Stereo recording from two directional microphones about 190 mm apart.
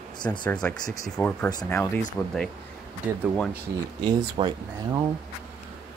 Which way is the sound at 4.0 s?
25° right (ahead or behind).